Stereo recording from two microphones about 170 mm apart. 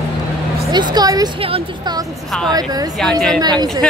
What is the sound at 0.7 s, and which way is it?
Speech, 25° right (ahead or behind).